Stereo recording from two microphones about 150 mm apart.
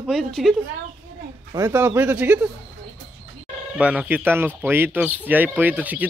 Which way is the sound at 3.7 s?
10° right (ahead or behind).